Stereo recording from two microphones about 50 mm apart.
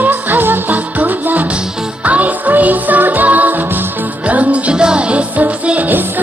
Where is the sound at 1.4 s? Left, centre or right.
Right.